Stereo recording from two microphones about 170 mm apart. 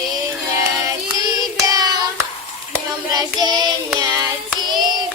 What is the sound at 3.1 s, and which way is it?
Child singing, 25° right (ahead or behind).